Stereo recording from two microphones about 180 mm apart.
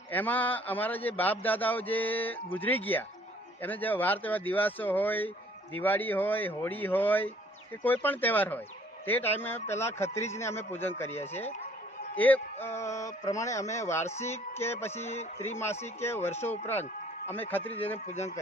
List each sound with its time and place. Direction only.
0.1 s speech: 10° left (ahead or behind)
12.6 s speech: 15° left (ahead or behind)
15.0 s a man's voice: 35° left (ahead or behind)
15.6 s speech: 15° left (ahead or behind)
18.1 s a man's voice: 40° left (ahead or behind)